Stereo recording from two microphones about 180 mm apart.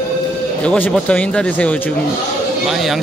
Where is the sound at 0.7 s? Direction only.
5° left (ahead or behind).